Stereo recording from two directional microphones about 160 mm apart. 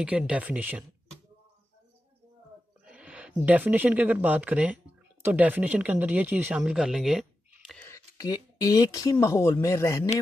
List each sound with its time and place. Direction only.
0.0 s speech: 5° right (ahead or behind)
2.8 s speech: 5° right (ahead or behind)
7.9 s speech: 20° left (ahead or behind)